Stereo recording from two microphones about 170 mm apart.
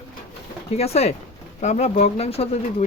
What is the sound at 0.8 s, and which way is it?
Speech, 40° left (ahead or behind).